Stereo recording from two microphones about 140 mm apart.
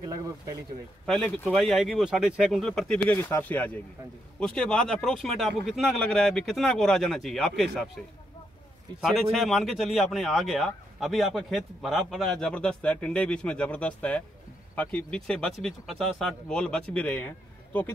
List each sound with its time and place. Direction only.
0.0 s speech: 25° right (ahead or behind)
1.0 s speech: 5° left (ahead or behind)
3.2 s speech: 15° left (ahead or behind); by 8.0 s centre (ahead or behind)
9.0 s speech: centre (ahead or behind)